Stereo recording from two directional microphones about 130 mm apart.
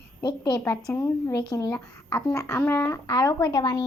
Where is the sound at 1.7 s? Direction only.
10° left (ahead or behind).